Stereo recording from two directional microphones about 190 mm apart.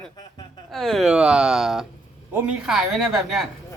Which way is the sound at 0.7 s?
Centre (ahead or behind).